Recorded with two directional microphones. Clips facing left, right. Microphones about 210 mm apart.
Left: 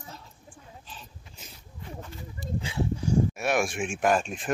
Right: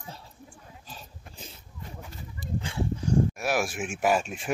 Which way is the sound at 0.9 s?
40° right (ahead or behind).